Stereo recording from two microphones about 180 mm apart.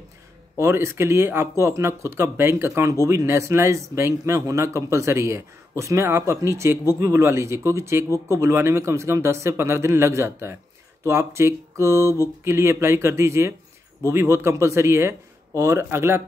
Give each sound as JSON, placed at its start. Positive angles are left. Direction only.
{"t": 0.6, "sound": "speech", "side_deg": -15}